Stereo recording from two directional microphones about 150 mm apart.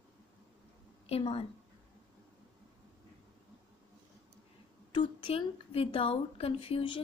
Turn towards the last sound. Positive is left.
turn(degrees=35)  # may be behind; listen again after turning